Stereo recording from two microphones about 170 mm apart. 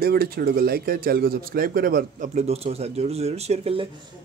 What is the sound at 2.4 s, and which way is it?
Speech, 35° right (ahead or behind).